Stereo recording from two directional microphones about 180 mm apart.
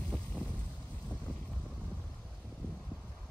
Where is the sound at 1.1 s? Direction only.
5° left (ahead or behind).